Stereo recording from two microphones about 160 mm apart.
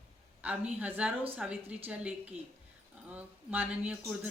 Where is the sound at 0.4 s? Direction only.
10° right (ahead or behind).